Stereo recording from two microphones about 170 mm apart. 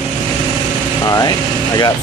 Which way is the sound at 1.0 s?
20° left (ahead or behind).